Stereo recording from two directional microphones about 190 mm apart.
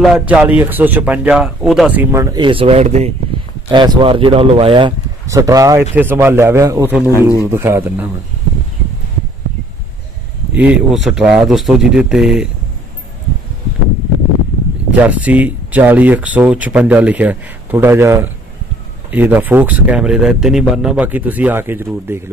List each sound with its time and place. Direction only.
0.0 s speech: 5° right (ahead or behind); by 3.1 s 35° right (ahead or behind)
3.7 s speech: 25° right (ahead or behind)
5.2 s speech: 15° right (ahead or behind)
10.5 s speech: 5° right (ahead or behind)
14.9 s speech: 5° right (ahead or behind)